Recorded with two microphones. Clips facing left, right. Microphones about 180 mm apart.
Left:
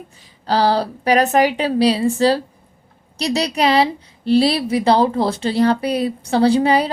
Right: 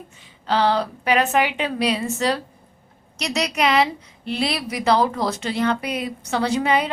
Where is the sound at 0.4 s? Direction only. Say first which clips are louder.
Left 3 dB; 35° left (ahead or behind).